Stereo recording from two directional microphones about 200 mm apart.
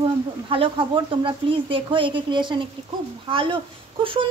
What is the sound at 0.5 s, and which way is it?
Speech, 25° right (ahead or behind).